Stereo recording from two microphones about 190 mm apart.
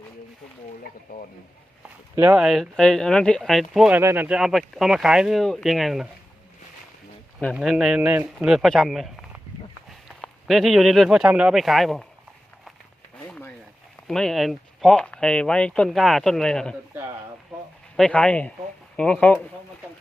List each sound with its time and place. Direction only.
1.1 s speech: 50° left (ahead or behind)
2.1 s speech: 5° right (ahead or behind)
7.5 s speech: centre (ahead or behind)
13.2 s a sound: 5° left (ahead or behind)
14.1 s speech: centre (ahead or behind)
17.9 s speech: 5° left (ahead or behind)